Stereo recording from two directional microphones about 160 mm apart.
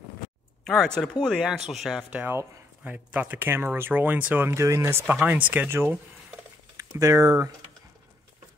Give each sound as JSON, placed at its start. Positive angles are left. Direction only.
{"t": 0.7, "sound": "speech", "side_deg": 5}